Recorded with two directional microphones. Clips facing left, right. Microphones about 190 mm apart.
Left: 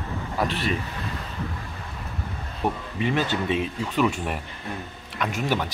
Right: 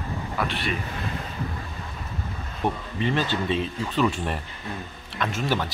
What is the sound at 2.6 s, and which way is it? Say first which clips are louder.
Speech: even; 10° left (ahead or behind).